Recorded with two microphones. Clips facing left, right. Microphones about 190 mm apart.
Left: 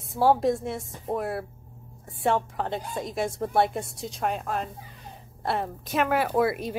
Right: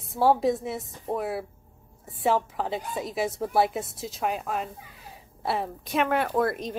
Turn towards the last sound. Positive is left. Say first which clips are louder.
# left 1 dB
turn(degrees=10)  # may be behind; listen again after turning